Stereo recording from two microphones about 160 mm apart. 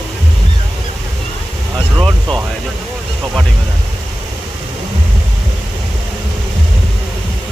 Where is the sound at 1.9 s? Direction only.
5° left (ahead or behind).